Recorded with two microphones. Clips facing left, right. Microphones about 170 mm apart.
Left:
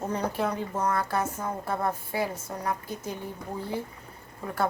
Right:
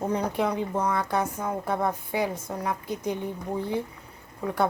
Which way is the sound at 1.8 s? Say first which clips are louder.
Right 2 dB; 15° right (ahead or behind).